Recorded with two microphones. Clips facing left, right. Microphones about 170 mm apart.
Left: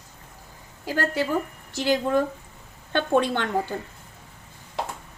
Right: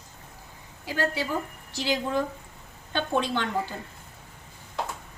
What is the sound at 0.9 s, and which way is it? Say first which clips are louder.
A woman's voice: left 3 dB; 50° left (ahead or behind).